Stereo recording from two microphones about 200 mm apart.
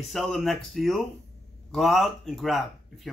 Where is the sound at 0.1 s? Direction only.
Centre (ahead or behind).